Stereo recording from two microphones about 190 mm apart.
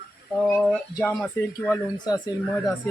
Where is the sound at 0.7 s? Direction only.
5° left (ahead or behind).